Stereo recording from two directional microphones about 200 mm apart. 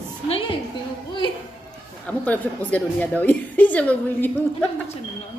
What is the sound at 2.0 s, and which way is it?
A woman's voice, 5° left (ahead or behind).